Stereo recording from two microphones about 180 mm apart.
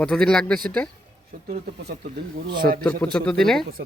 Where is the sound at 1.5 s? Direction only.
65° right (ahead or behind).